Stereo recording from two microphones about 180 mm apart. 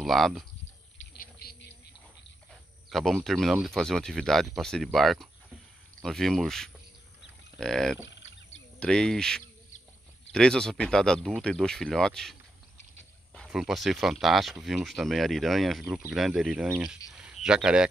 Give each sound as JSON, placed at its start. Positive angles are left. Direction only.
{"t": 0.0, "sound": "speech", "side_deg": 0}
{"t": 1.4, "sound": "a sound", "side_deg": 60}
{"t": 2.9, "sound": "speech", "side_deg": 0}